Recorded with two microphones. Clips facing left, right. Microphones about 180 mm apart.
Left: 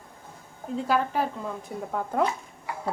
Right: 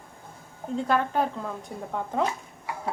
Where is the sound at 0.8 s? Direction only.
5° left (ahead or behind).